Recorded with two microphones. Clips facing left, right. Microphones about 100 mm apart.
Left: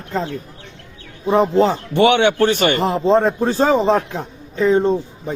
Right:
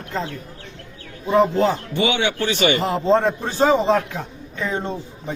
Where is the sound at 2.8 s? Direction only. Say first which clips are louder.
Left 3 dB; 20° left (ahead or behind).